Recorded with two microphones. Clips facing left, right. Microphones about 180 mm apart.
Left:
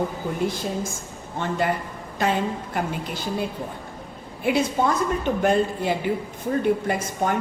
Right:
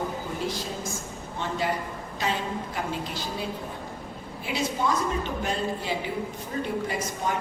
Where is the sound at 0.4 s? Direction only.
55° left (ahead or behind).